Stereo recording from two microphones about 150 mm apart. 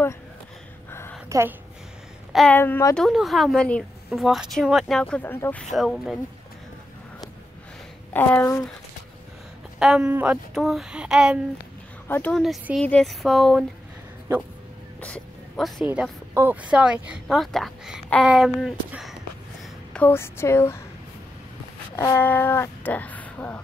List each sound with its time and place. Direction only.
0.8 s a sound: 15° left (ahead or behind)
1.3 s a woman's voice: 20° right (ahead or behind)
2.3 s speech: 10° left (ahead or behind)
3.0 s speech: centre (ahead or behind)
5.7 s speech: centre (ahead or behind)
8.1 s speech: 15° left (ahead or behind)
9.8 s speech: 5° right (ahead or behind)
12.1 s speech: 10° left (ahead or behind)
15.0 s a sound: 10° left (ahead or behind)
15.9 s a woman's voice: 10° right (ahead or behind)
19.9 s speech: 10° left (ahead or behind)
21.9 s speech: 15° left (ahead or behind)